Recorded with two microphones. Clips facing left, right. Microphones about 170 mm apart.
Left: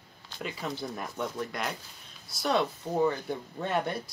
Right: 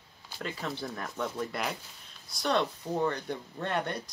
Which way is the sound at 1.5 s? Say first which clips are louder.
Even; 5° right (ahead or behind).